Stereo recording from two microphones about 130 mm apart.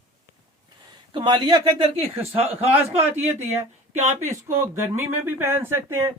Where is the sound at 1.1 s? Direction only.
40° right (ahead or behind).